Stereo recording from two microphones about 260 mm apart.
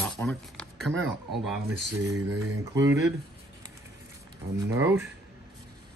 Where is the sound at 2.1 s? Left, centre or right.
Right.